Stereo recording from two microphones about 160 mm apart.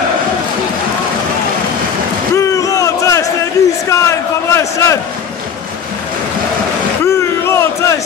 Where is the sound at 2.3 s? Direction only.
20° left (ahead or behind).